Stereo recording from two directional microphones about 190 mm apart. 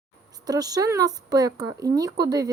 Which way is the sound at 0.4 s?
20° right (ahead or behind).